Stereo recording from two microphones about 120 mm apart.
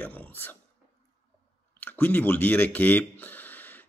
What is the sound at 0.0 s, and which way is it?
Speech, 15° left (ahead or behind).